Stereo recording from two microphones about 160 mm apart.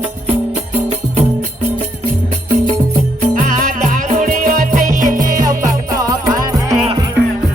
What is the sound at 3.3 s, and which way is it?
Music, 55° right (ahead or behind).